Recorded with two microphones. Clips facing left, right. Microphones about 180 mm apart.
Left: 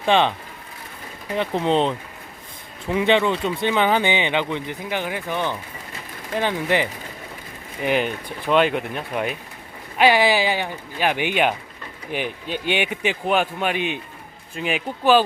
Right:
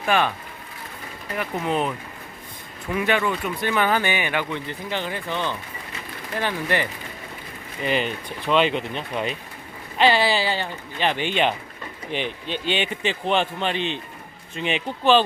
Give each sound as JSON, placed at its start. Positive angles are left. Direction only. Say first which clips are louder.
{"t": 0.0, "sound": "speech", "louder": "left 3 dB", "side_deg": 25}
{"t": 1.4, "sound": "a man's voice", "louder": "left 5 dB", "side_deg": 25}